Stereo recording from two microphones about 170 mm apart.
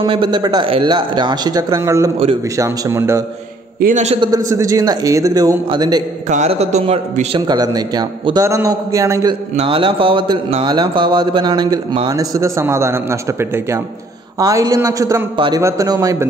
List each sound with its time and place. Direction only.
0.0 s a man's voice: 30° right (ahead or behind)
3.8 s a man's voice: 40° right (ahead or behind)
4.2 s a man's voice: 20° right (ahead or behind)
6.2 s a man's voice: 40° right (ahead or behind)
7.3 s a man's voice: 25° right (ahead or behind)
9.6 s a man's voice: 30° right (ahead or behind)